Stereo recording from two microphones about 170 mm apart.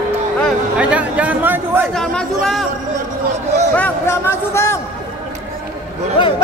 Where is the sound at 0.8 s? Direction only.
10° right (ahead or behind).